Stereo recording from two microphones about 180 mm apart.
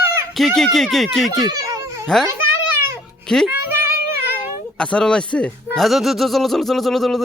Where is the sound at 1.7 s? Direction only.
20° right (ahead or behind).